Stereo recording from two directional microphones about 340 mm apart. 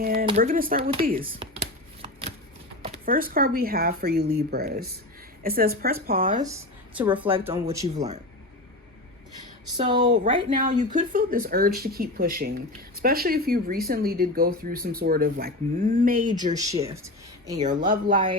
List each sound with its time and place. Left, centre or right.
0.0 s speech: right
0.3 s chopping: right
2.8 s speech: right
6.4 s speech: centre
9.9 s speech: centre
16.6 s speech: centre
17.7 s speech: right